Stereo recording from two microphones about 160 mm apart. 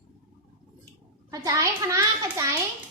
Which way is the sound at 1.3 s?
20° right (ahead or behind).